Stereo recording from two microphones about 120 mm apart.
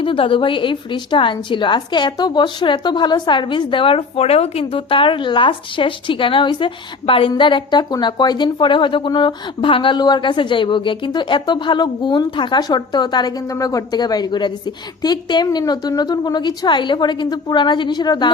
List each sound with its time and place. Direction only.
0.0 s a woman's voice: 50° left (ahead or behind)